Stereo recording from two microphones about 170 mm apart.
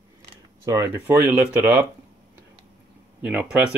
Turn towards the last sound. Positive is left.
turn(degrees=-10)  # may be behind; listen again after turning